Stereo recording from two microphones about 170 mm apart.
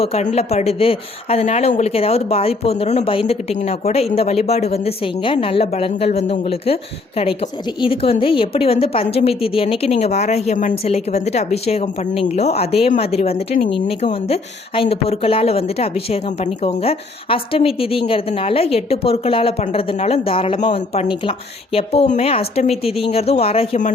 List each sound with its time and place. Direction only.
0.0 s speech: 40° left (ahead or behind)
7.8 s speech: 30° left (ahead or behind)